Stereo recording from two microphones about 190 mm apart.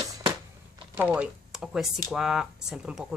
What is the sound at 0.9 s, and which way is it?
Speech, 10° right (ahead or behind).